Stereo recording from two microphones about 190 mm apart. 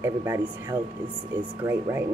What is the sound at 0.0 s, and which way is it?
Speech, 10° right (ahead or behind).